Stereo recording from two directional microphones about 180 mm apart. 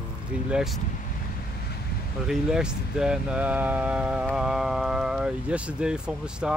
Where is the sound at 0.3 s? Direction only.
5° right (ahead or behind).